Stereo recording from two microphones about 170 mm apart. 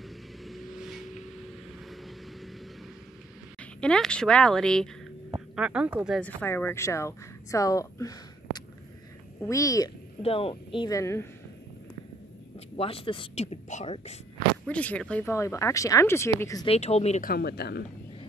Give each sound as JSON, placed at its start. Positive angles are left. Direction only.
{"t": 0.4, "sound": "vehicle", "side_deg": 0}
{"t": 3.8, "sound": "speech", "side_deg": 5}
{"t": 5.6, "sound": "speech", "side_deg": -5}
{"t": 6.1, "sound": "speech", "side_deg": 10}
{"t": 10.2, "sound": "speech", "side_deg": 35}
{"t": 12.5, "sound": "speech", "side_deg": 35}
{"t": 14.7, "sound": "speech", "side_deg": 10}
{"t": 16.6, "sound": "speech", "side_deg": 40}
{"t": 17.2, "sound": "speech", "side_deg": 65}